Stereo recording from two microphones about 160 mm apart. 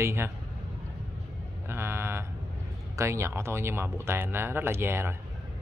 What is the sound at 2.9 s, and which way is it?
Speech, 15° right (ahead or behind).